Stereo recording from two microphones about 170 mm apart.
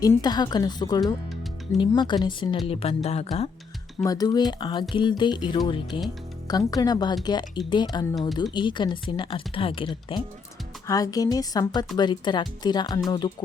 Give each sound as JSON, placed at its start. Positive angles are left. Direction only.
{"t": 0.0, "sound": "speech", "side_deg": 20}
{"t": 4.0, "sound": "speech", "side_deg": 20}